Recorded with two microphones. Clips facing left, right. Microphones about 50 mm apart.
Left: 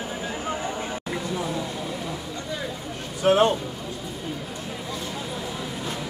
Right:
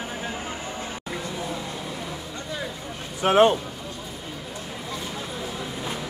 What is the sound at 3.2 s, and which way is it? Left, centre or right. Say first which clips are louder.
Speech: right 1 dB; right.